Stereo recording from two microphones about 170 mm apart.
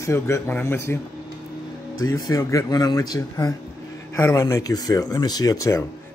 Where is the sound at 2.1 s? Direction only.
20° left (ahead or behind).